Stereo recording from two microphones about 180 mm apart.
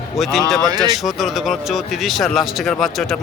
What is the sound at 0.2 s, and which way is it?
Speech, centre (ahead or behind).